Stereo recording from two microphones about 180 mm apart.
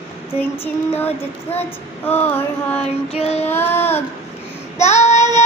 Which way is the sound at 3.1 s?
35° left (ahead or behind).